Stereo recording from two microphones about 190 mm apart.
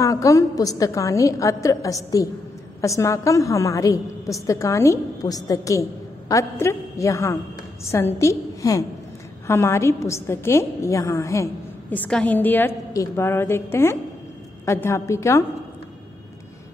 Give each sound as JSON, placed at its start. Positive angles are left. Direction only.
{"t": 0.0, "sound": "a woman's voice", "side_deg": 15}